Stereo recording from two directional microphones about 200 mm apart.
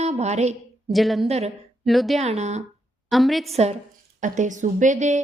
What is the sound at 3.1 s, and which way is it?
Speech, centre (ahead or behind).